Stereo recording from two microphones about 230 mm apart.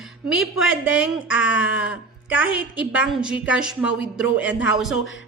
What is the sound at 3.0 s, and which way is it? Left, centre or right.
A woman's voice, centre.